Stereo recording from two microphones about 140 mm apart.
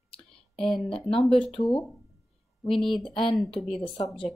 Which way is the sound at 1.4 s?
40° left (ahead or behind).